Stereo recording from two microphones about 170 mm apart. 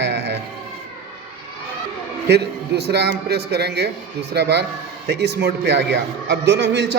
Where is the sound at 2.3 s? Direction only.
75° right (ahead or behind).